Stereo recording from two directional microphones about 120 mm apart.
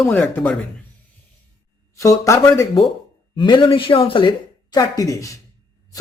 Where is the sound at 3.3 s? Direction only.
40° left (ahead or behind).